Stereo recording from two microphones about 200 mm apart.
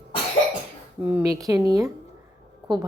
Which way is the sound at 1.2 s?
15° right (ahead or behind).